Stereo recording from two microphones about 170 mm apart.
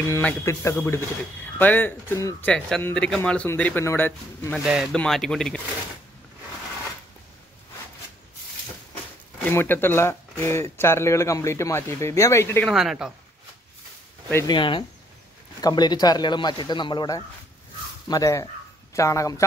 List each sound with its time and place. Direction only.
0.1 s speech: 15° left (ahead or behind)
2.5 s speech: 5° left (ahead or behind)
4.6 s speech: centre (ahead or behind)
9.4 s speech: 15° left (ahead or behind)
12.6 s speech: centre (ahead or behind)
14.3 s speech: 25° left (ahead or behind)